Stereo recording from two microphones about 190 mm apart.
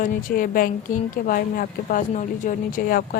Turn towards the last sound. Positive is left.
turn(degrees=50)  # may be behind; listen again after turning